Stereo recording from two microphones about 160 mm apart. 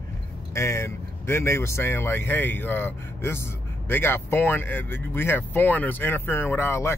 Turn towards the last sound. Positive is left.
turn(degrees=15)  # may be behind; listen again after turning